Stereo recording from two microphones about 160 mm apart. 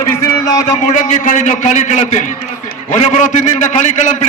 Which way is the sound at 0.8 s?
50° left (ahead or behind).